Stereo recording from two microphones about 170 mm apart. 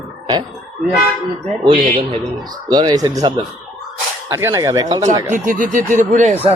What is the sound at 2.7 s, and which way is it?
Speech, 25° right (ahead or behind).